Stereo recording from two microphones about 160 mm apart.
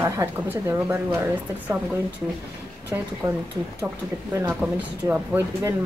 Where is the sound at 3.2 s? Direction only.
10° right (ahead or behind).